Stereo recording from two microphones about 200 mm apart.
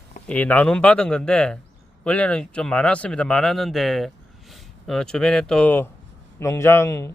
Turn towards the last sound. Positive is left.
turn(degrees=15)  # may be behind; listen again after turning